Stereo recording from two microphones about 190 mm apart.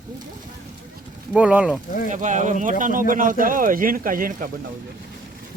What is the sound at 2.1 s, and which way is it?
A man's voice, 40° right (ahead or behind).